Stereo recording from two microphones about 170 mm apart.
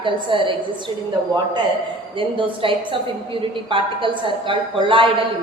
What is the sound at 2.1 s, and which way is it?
A woman's voice, 30° right (ahead or behind).